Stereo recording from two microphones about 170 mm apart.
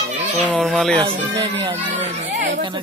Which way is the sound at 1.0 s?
30° right (ahead or behind).